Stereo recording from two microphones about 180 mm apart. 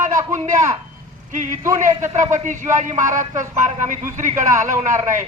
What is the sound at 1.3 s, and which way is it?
Speech, 45° right (ahead or behind).